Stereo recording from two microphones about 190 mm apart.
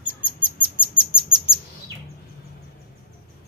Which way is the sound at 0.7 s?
5° right (ahead or behind).